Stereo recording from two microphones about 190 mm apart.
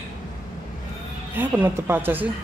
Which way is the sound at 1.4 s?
15° right (ahead or behind).